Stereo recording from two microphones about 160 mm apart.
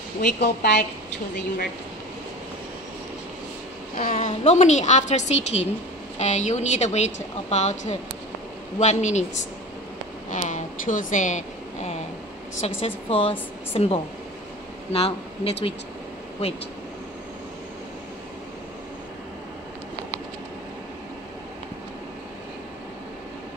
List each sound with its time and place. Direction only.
0.2 s a woman's voice: 90° left
3.9 s a woman's voice: 55° left (ahead or behind); by 15.5 s 40° left (ahead or behind)